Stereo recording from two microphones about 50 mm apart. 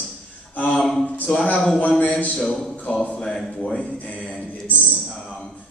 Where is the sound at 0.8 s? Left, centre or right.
Centre.